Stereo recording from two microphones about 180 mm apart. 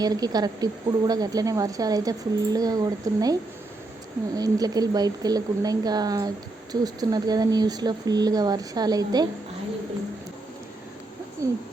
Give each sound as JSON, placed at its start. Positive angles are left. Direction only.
{"t": 0.0, "sound": "a woman's voice", "side_deg": -20}
{"t": 4.4, "sound": "a woman's voice", "side_deg": -20}
{"t": 11.4, "sound": "a sound", "side_deg": -15}